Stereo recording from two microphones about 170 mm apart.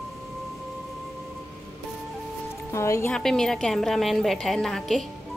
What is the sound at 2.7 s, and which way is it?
Speech, 15° left (ahead or behind).